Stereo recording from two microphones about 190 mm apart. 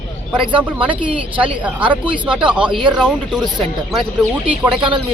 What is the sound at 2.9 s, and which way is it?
Speech, 5° right (ahead or behind).